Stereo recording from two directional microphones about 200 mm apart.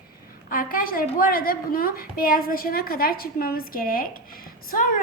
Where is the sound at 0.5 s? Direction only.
45° left (ahead or behind).